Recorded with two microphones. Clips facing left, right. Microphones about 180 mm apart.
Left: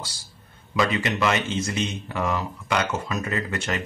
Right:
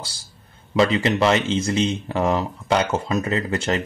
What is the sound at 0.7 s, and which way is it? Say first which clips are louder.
Speech: right 5 dB; 30° right (ahead or behind).